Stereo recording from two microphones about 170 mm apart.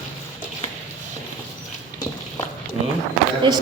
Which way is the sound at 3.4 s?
30° right (ahead or behind).